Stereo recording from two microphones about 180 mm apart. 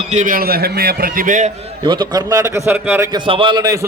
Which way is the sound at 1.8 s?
25° right (ahead or behind).